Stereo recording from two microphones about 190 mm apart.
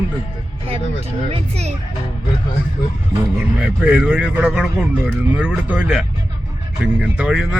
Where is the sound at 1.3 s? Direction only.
35° right (ahead or behind).